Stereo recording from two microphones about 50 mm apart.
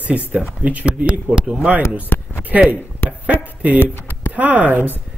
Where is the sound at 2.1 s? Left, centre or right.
Left.